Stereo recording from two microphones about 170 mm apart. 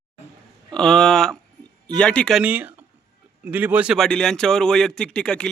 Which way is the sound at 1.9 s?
5° left (ahead or behind).